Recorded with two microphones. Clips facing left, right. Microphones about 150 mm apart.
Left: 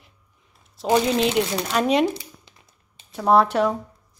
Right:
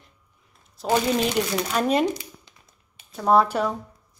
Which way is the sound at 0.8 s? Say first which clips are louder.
Left 3 dB; 15° left (ahead or behind).